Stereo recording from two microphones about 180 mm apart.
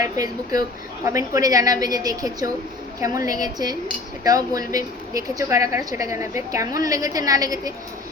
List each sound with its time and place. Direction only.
0.0 s a woman's voice: 20° right (ahead or behind)